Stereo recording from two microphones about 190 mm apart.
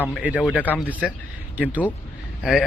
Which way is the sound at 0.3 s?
5° left (ahead or behind).